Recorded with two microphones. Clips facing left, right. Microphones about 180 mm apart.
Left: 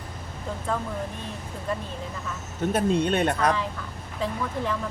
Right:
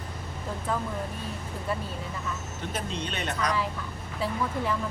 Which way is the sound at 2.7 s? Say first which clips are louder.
Left 12 dB; 55° left (ahead or behind).